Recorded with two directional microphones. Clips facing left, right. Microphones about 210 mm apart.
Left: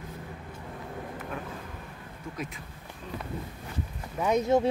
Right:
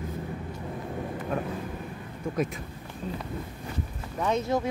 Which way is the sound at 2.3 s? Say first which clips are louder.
Right 9 dB; 45° right (ahead or behind).